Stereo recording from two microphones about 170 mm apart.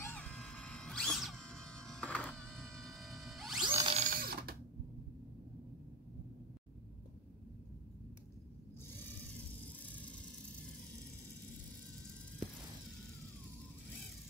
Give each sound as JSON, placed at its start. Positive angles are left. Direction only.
{"t": 0.0, "sound": "music", "side_deg": 10}
{"t": 3.8, "sound": "ratchet", "side_deg": -40}
{"t": 4.1, "sound": "a sound", "side_deg": -65}
{"t": 8.9, "sound": "vehicle", "side_deg": 10}